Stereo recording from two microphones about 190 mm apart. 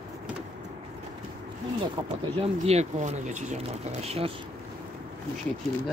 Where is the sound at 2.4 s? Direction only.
35° right (ahead or behind).